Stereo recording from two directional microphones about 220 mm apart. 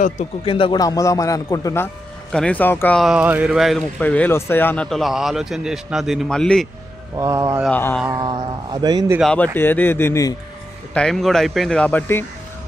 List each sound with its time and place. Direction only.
0.0 s a man's voice: 25° left (ahead or behind); by 6.7 s 5° left (ahead or behind)
7.2 s speech: 15° right (ahead or behind)
7.6 s speech: 5° left (ahead or behind)
8.1 s speech: 20° right (ahead or behind)
9.2 s a man's voice: 5° left (ahead or behind)